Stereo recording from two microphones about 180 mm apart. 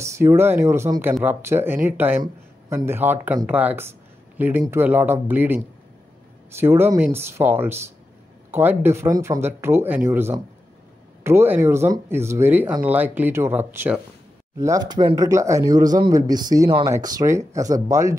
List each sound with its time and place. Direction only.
0.0 s a man's voice: 15° right (ahead or behind)